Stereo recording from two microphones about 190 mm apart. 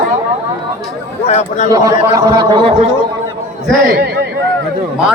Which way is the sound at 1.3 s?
40° left (ahead or behind).